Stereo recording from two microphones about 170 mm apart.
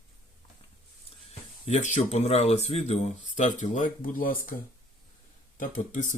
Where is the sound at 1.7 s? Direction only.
45° left (ahead or behind).